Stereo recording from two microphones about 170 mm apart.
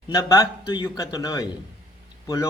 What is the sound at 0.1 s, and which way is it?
A man's voice, 20° left (ahead or behind).